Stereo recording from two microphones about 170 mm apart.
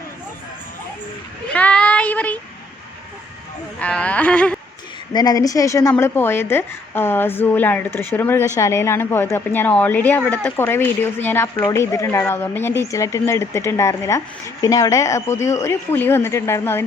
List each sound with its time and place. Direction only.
1.5 s child singing: 5° left (ahead or behind)
3.8 s a woman's voice: 5° left (ahead or behind)
5.1 s a woman's voice: 25° left (ahead or behind)